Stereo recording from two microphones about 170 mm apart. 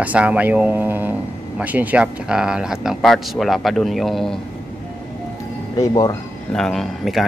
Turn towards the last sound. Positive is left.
turn(degrees=0)  # may be behind; listen again after turning